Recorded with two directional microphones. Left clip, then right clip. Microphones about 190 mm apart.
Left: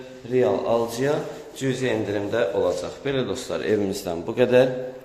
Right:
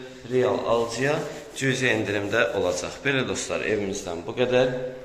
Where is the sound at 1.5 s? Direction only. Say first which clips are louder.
Right 1 dB; 15° left (ahead or behind).